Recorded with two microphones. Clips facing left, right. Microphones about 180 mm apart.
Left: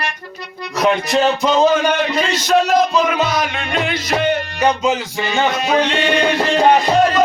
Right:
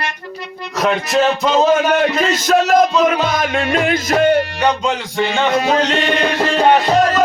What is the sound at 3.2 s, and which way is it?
Music, 45° right (ahead or behind).